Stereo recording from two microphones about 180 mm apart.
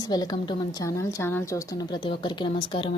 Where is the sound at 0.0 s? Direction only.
20° left (ahead or behind).